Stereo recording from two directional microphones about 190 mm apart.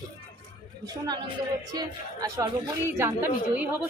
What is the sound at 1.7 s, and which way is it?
A woman's voice, 15° right (ahead or behind).